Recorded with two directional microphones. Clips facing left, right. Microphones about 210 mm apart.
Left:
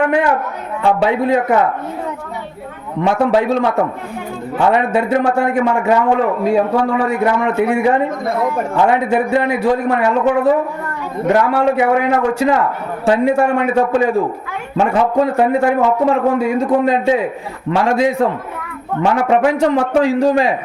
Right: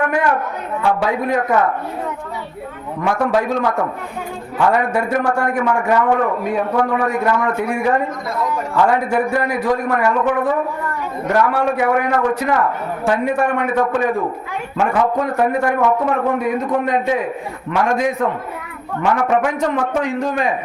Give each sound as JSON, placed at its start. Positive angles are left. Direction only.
{"t": 0.0, "sound": "a man's voice", "side_deg": 25}
{"t": 3.1, "sound": "a man's voice", "side_deg": 25}
{"t": 8.3, "sound": "speech", "side_deg": 55}
{"t": 8.7, "sound": "a man's voice", "side_deg": 25}